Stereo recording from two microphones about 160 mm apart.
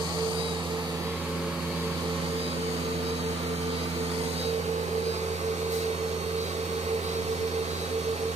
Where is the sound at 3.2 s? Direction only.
40° right (ahead or behind).